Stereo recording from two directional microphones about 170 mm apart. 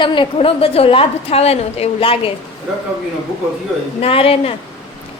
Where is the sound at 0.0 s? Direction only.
30° left (ahead or behind).